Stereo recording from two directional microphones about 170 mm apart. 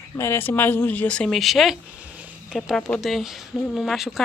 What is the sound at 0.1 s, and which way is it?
Speech, 15° left (ahead or behind).